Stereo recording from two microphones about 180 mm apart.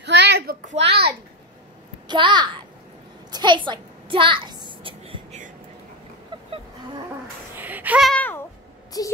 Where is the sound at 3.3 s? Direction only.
25° right (ahead or behind).